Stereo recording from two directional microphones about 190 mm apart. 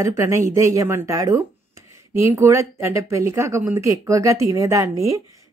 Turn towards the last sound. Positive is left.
turn(degrees=-15)  # may be behind; listen again after turning